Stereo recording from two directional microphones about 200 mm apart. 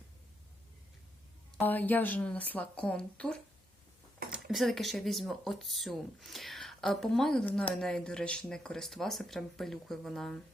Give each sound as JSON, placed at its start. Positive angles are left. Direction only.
{"t": 1.5, "sound": "a woman's voice", "side_deg": 10}